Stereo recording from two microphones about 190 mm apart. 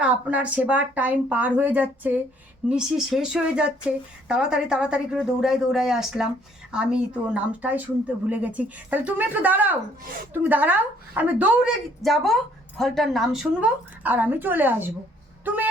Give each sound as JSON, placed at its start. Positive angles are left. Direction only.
{"t": 0.0, "sound": "a woman's voice", "side_deg": -5}